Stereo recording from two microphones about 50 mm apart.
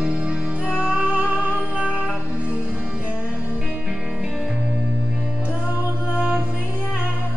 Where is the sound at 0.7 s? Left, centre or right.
Right.